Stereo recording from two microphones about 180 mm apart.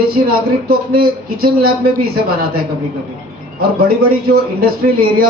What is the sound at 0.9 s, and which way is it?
A man's voice, 55° right (ahead or behind).